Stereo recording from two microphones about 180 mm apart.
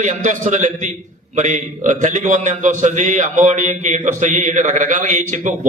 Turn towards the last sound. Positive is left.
turn(degrees=-45)  # may be behind; listen again after turning